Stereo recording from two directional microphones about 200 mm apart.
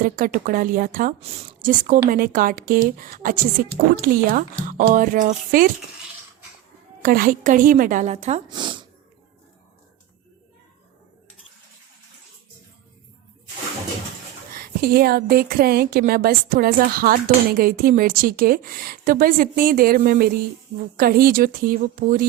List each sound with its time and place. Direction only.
0.0 s a woman's voice: 45° right (ahead or behind)
1.2 s a woman's voice: 30° right (ahead or behind)
7.0 s a woman's voice: 45° right (ahead or behind)
8.4 s speech: 20° right (ahead or behind)
14.5 s a woman's voice: 50° right (ahead or behind)